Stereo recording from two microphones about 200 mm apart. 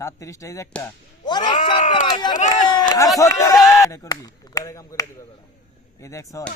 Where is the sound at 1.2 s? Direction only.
20° left (ahead or behind).